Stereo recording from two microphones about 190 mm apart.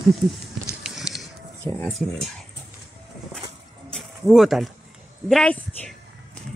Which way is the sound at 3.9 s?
Centre (ahead or behind).